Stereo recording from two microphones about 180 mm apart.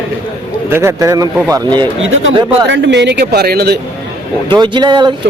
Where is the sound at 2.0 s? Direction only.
85° right; by 3.8 s 60° right (ahead or behind).